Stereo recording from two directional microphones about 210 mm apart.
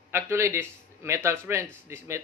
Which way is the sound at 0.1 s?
10° right (ahead or behind).